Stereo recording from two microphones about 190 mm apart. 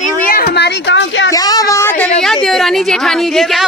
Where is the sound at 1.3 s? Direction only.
20° left (ahead or behind).